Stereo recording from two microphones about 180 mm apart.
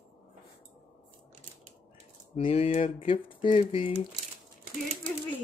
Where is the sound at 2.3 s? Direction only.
35° left (ahead or behind).